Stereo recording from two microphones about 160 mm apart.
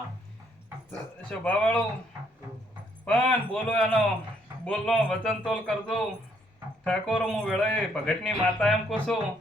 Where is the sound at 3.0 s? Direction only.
5° left (ahead or behind).